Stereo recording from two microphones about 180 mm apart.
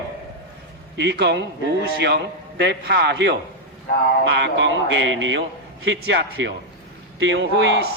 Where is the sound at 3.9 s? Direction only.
55° left (ahead or behind).